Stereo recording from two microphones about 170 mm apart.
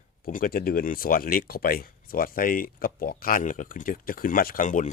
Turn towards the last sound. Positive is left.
turn(degrees=50)  # may be behind; listen again after turning